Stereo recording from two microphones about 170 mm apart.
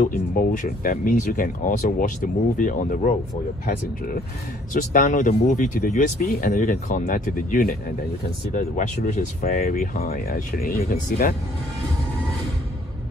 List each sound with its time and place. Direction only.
0.6 s speech: 55° left (ahead or behind)
4.7 s speech: 50° left (ahead or behind)
9.5 s speech: 55° left (ahead or behind)